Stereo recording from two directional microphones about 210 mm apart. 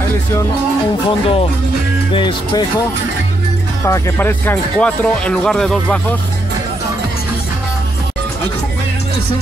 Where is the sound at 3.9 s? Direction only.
10° left (ahead or behind).